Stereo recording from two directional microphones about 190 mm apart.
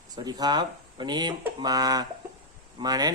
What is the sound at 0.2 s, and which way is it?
Speech, 20° right (ahead or behind).